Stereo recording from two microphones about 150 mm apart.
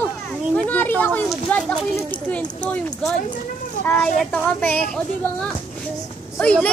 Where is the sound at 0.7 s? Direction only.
10° left (ahead or behind).